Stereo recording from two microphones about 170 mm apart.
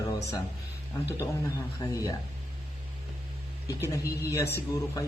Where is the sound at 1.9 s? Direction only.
20° left (ahead or behind).